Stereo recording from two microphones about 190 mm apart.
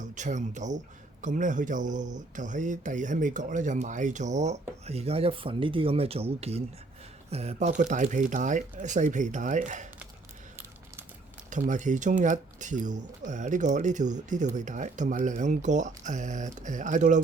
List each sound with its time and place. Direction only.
0.0 s speech: 40° right (ahead or behind)
11.5 s speech: 40° right (ahead or behind)